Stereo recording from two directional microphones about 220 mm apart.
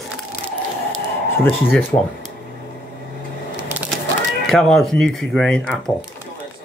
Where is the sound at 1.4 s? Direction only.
5° left (ahead or behind).